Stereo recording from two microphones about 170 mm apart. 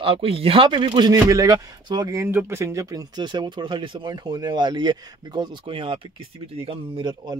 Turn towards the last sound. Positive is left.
turn(degrees=-30)  # may be behind; listen again after turning